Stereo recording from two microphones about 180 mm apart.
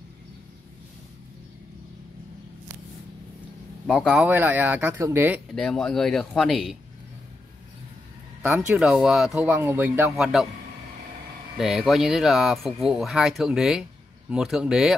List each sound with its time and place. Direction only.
3.8 s speech: centre (ahead or behind)
5.5 s speech: centre (ahead or behind)
8.4 s speech: 10° right (ahead or behind)
9.5 s speech: 15° right (ahead or behind)
11.5 s speech: 5° right (ahead or behind)